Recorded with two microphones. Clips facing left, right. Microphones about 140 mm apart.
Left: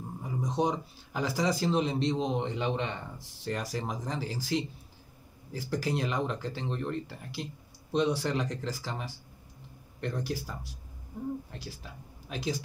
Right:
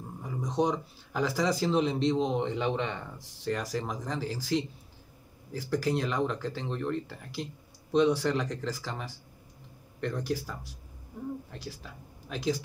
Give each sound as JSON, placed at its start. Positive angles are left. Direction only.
{"t": 0.2, "sound": "speech", "side_deg": 5}
{"t": 12.3, "sound": "speech", "side_deg": 5}